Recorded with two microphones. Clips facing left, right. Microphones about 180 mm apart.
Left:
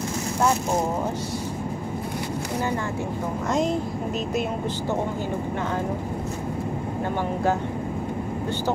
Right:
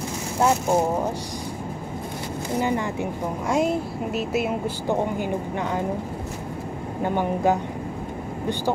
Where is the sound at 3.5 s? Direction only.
5° right (ahead or behind).